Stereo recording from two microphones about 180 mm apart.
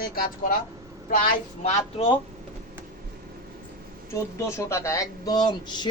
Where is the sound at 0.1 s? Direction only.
55° left (ahead or behind).